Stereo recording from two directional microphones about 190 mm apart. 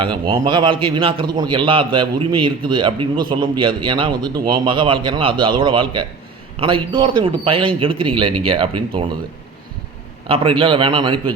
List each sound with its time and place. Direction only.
0.0 s a man's voice: 25° right (ahead or behind)
10.2 s a man's voice: 30° right (ahead or behind)